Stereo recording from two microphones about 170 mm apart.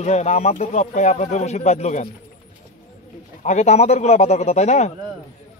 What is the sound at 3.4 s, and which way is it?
Speech, 40° left (ahead or behind).